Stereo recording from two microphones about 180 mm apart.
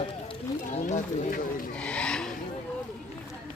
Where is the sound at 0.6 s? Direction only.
45° left (ahead or behind).